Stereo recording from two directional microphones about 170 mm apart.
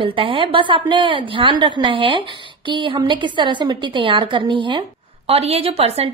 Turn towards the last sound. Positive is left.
turn(degrees=-35)  # may be behind; listen again after turning